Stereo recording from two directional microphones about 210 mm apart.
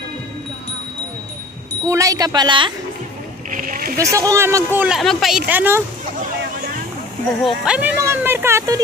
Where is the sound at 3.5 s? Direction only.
40° right (ahead or behind).